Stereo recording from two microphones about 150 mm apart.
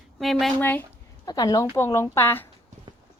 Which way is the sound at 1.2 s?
25° left (ahead or behind).